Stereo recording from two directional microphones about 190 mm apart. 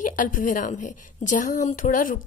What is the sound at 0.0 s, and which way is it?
A woman's voice, 45° left (ahead or behind).